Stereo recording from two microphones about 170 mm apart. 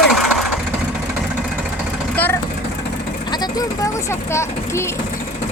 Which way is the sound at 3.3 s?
25° left (ahead or behind).